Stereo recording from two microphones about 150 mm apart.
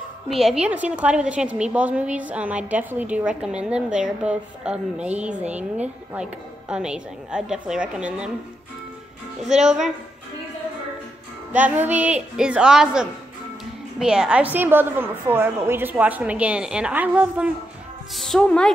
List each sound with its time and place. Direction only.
0.3 s a woman's voice: centre (ahead or behind)
11.5 s a woman's voice: 10° right (ahead or behind)
18.1 s a woman's voice: 5° left (ahead or behind)